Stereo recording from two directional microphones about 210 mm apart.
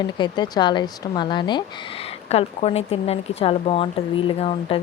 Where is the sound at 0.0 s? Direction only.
20° left (ahead or behind).